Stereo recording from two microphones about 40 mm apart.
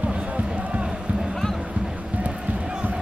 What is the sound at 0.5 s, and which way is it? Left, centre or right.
Run, right.